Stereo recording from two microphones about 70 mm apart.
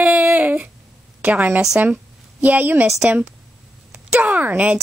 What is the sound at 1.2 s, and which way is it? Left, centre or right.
A child's voice, right.